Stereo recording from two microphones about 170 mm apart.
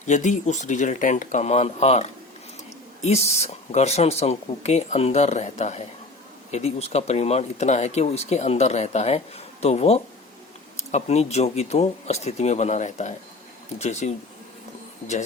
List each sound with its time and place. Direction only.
0.0 s speech: 45° left (ahead or behind)